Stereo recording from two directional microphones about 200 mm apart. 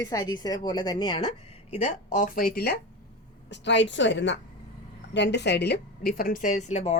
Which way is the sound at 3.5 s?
60° left (ahead or behind).